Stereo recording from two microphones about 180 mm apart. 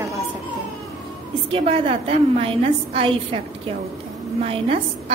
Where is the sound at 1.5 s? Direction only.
30° right (ahead or behind).